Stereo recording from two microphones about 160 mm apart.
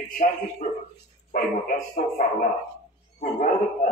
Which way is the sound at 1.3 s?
60° left (ahead or behind).